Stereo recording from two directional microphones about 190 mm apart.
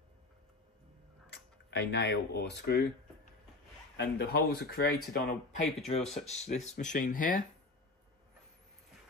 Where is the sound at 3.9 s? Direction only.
60° left (ahead or behind).